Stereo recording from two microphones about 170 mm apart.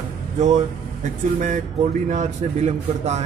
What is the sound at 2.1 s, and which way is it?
A man's voice, 40° right (ahead or behind).